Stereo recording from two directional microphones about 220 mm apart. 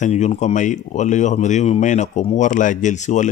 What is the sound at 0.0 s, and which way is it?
Speech, 30° left (ahead or behind).